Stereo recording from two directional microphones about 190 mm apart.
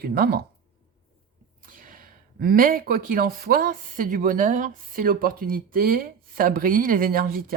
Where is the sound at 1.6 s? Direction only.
45° right (ahead or behind).